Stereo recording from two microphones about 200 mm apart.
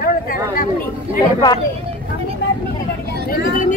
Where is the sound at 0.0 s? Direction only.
45° left (ahead or behind).